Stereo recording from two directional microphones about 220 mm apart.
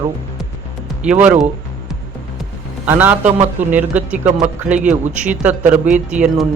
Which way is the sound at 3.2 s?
35° right (ahead or behind).